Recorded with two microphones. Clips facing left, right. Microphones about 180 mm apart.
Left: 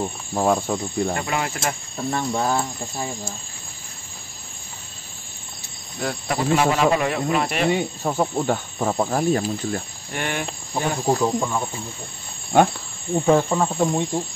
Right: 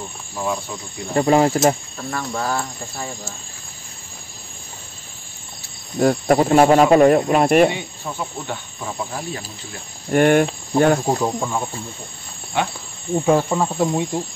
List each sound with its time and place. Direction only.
0.3 s speech: 50° left (ahead or behind)
1.1 s speech: 35° right (ahead or behind)
2.0 s speech: 20° left (ahead or behind)
5.9 s speech: 45° right (ahead or behind)
7.7 s speech: 45° left (ahead or behind)
10.1 s speech: 50° right (ahead or behind)
11.1 s speech: 10° right (ahead or behind)
12.5 s speech: 45° left (ahead or behind)
13.2 s cricket: 5° right (ahead or behind)